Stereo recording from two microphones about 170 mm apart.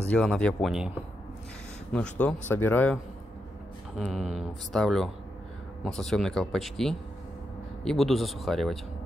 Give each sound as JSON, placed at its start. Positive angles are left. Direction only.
{"t": 0.0, "sound": "speech", "side_deg": 5}
{"t": 1.9, "sound": "speech", "side_deg": 10}
{"t": 4.0, "sound": "speech", "side_deg": 0}